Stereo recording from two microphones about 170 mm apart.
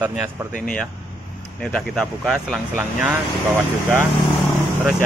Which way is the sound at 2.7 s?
10° right (ahead or behind).